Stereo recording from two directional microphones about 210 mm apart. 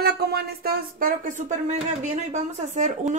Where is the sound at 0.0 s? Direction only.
50° right (ahead or behind).